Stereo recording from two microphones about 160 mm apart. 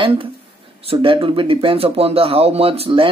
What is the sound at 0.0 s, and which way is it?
Speech, 30° right (ahead or behind).